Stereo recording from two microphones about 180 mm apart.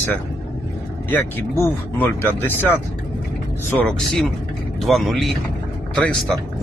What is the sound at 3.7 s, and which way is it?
Speech, 5° left (ahead or behind).